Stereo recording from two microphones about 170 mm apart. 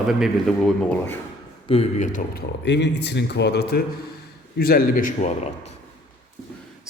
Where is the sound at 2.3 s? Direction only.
80° left.